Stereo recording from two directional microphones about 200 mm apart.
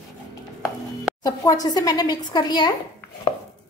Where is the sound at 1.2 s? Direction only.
20° left (ahead or behind).